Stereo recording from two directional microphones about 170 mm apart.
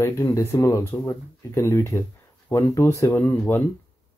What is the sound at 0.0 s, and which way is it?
Speech, 20° left (ahead or behind).